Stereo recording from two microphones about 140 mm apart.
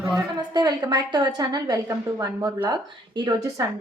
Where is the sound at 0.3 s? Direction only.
30° right (ahead or behind).